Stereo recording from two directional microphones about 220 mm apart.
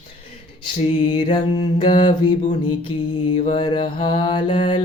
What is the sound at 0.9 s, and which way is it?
Mantra, 20° left (ahead or behind).